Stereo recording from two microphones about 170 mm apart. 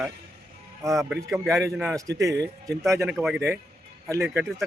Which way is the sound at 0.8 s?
20° right (ahead or behind).